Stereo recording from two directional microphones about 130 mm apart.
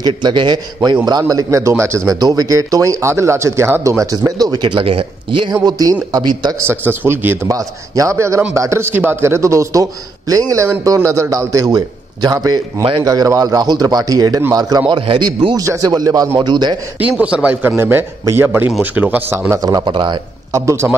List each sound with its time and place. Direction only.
0.0 s a man's voice: 35° right (ahead or behind)
6.6 s a man's voice: 15° right (ahead or behind); by 16.7 s 35° right (ahead or behind)
17.2 s a man's voice: 10° right (ahead or behind); by 20.2 s 40° right (ahead or behind)
20.5 s speech: 20° right (ahead or behind)